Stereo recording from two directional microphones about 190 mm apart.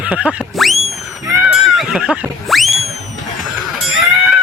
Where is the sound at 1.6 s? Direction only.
Centre (ahead or behind).